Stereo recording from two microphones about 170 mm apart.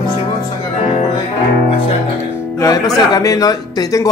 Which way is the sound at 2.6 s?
20° left (ahead or behind).